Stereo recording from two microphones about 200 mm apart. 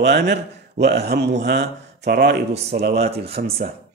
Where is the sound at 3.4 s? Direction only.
35° right (ahead or behind).